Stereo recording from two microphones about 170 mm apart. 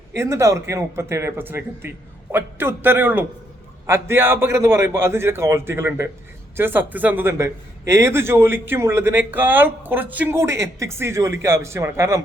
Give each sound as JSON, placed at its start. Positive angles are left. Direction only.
{"t": 0.1, "sound": "a man's voice", "side_deg": -15}